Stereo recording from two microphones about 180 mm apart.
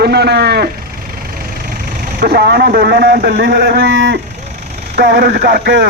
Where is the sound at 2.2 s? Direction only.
60° right (ahead or behind).